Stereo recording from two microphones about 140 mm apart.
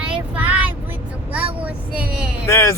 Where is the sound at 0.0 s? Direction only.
10° right (ahead or behind).